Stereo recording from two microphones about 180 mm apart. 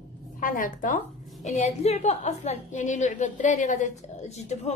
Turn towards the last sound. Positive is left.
turn(degrees=40)  # may be behind; listen again after turning